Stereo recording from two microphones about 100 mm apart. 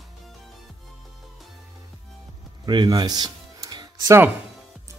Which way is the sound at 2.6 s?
45° right (ahead or behind).